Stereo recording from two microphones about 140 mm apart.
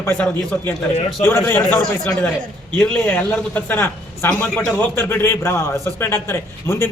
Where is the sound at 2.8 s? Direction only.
10° left (ahead or behind).